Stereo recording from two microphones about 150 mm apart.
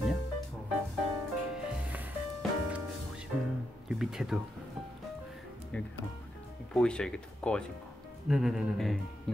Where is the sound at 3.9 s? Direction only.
5° right (ahead or behind).